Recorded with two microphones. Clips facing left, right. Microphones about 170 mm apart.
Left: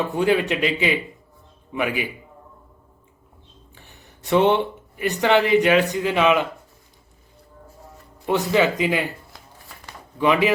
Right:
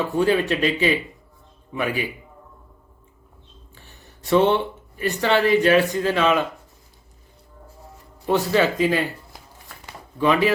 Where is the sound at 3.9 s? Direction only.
15° left (ahead or behind).